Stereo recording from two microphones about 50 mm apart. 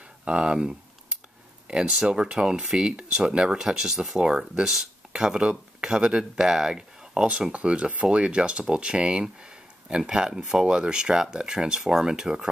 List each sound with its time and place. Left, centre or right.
0.2 s speech: centre